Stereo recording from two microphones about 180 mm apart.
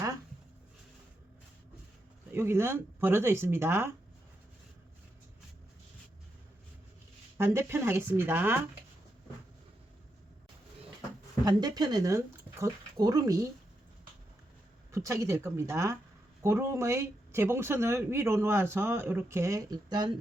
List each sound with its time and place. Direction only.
2.3 s speech: 15° right (ahead or behind)
7.3 s speech: 15° right (ahead or behind)
11.4 s speech: 20° right (ahead or behind)
14.9 s speech: 15° right (ahead or behind)